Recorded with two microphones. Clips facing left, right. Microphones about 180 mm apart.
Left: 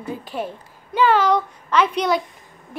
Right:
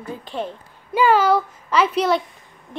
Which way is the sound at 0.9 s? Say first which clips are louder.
Right 1 dB; 10° right (ahead or behind).